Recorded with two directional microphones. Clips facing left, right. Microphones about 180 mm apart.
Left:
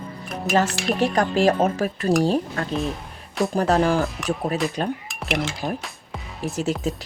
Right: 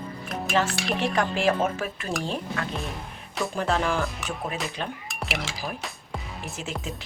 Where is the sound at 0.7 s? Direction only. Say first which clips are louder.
Left 4 dB; centre (ahead or behind).